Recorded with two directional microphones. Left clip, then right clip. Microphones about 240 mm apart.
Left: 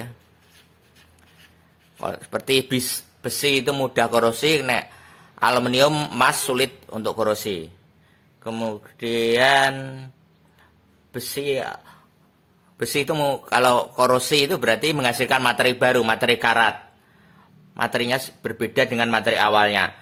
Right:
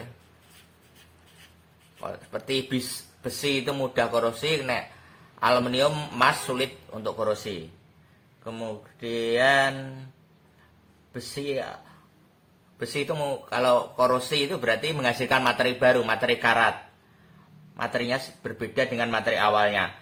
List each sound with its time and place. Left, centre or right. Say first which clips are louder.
2.0 s speech: left 7 dB; left
11.1 s speech: left 6 dB; left
12.8 s speech: left 7 dB; left
17.7 s speech: left 5 dB; left